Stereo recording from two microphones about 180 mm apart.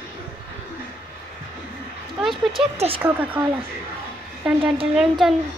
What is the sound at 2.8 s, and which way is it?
Speech, 30° right (ahead or behind).